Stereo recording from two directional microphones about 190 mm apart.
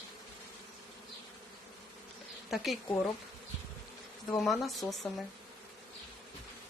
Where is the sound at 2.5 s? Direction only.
Centre (ahead or behind).